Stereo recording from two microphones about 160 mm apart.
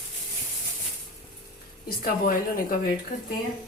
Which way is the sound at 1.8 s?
65° left (ahead or behind).